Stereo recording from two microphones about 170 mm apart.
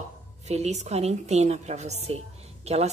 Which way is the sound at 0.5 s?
40° right (ahead or behind).